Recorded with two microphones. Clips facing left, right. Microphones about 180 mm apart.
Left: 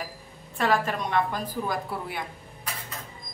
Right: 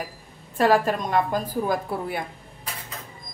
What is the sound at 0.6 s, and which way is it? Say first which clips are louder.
A woman's voice: right 5 dB; 40° right (ahead or behind).